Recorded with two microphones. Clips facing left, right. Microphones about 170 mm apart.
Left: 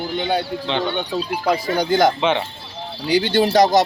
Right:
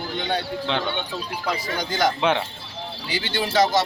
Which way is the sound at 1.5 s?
45° left (ahead or behind).